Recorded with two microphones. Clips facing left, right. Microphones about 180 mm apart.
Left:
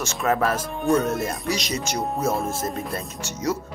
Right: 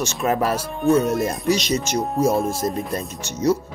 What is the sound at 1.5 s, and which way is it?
Speech, 20° right (ahead or behind).